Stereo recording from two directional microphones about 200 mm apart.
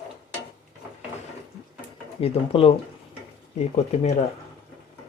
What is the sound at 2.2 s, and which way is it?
Speech, 30° left (ahead or behind).